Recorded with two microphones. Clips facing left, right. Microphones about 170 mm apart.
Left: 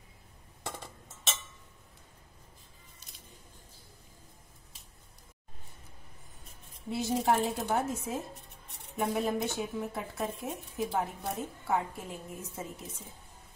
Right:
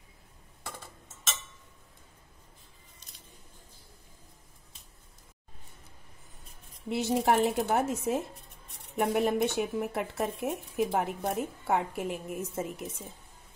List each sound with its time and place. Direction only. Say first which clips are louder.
6.9 s speech: right 2 dB; 70° right (ahead or behind)